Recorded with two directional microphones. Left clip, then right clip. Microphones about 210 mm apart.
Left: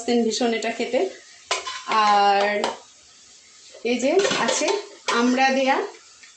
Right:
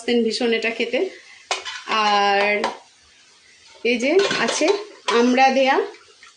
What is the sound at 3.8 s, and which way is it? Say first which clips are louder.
Dishes: right 2 dB; 25° right (ahead or behind).